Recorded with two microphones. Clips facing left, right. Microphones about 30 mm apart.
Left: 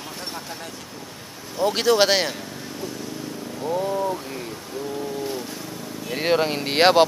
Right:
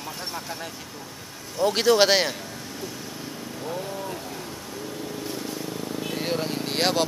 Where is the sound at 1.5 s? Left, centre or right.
Centre.